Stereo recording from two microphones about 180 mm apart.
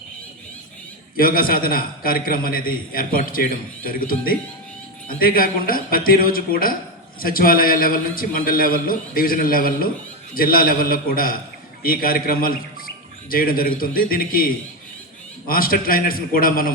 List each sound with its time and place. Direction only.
1.1 s a man's voice: 55° left (ahead or behind)